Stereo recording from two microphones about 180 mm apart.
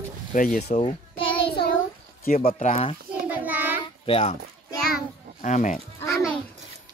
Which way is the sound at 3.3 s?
10° right (ahead or behind).